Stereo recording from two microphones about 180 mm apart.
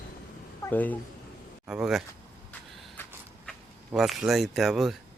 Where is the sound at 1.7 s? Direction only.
5° right (ahead or behind).